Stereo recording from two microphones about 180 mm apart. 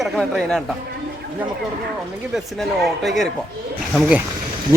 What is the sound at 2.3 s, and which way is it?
Speech, centre (ahead or behind).